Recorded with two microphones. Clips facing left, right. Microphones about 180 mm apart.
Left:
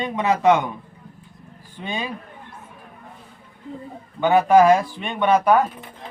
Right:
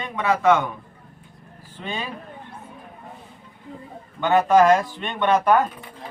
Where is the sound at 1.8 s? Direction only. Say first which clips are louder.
Left 2 dB; 15° left (ahead or behind).